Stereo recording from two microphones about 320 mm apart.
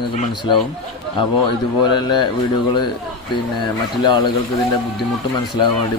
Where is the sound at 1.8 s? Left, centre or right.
Centre.